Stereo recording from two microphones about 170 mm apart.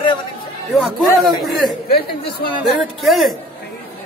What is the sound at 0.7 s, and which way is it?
Speech, centre (ahead or behind).